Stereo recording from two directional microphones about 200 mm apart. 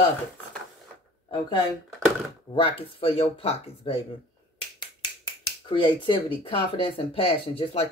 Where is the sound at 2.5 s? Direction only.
25° left (ahead or behind).